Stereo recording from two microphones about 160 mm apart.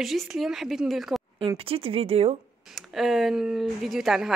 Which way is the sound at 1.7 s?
35° right (ahead or behind).